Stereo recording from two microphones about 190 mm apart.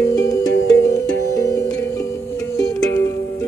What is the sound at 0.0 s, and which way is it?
Music, 15° left (ahead or behind).